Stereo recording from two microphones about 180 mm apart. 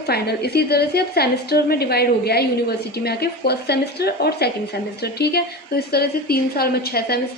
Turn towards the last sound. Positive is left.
turn(degrees=60)  # may be behind; listen again after turning